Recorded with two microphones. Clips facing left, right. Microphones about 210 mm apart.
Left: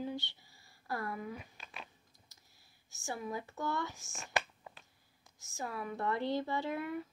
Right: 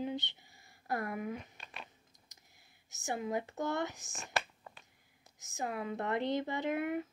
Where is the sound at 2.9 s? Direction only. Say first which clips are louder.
Right 4 dB; 20° right (ahead or behind).